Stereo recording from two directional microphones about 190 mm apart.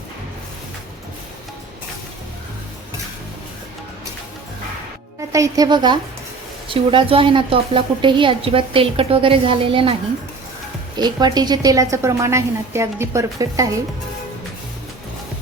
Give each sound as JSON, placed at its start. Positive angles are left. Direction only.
{"t": 5.3, "sound": "a woman's voice", "side_deg": -20}
{"t": 10.9, "sound": "a woman's voice", "side_deg": -20}